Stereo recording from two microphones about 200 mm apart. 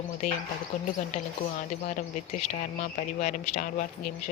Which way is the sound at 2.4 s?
35° left (ahead or behind).